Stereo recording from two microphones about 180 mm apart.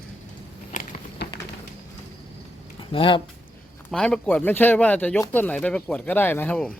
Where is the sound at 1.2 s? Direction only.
70° left (ahead or behind).